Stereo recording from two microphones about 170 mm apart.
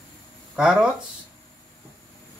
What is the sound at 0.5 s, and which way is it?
Speech, 5° right (ahead or behind).